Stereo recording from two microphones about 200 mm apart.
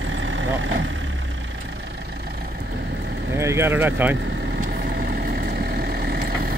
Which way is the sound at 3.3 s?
15° right (ahead or behind).